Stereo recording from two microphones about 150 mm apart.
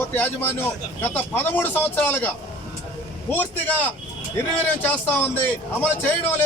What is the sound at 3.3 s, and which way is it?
A man's voice, 10° left (ahead or behind).